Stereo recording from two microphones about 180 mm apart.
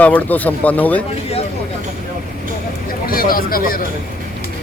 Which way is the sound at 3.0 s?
55° left (ahead or behind).